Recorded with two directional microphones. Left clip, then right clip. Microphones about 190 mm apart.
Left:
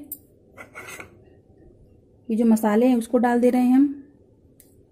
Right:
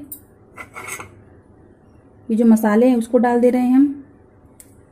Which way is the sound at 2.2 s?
20° left (ahead or behind).